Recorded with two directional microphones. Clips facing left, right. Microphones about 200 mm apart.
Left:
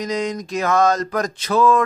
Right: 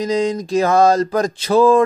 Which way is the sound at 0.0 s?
30° right (ahead or behind).